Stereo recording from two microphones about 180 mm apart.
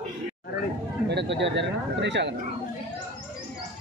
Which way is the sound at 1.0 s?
70° right (ahead or behind).